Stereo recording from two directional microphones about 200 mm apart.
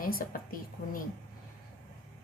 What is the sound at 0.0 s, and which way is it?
Speech, 45° left (ahead or behind).